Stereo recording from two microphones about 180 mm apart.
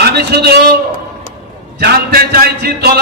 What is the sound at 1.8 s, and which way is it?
A man's voice, 60° right (ahead or behind).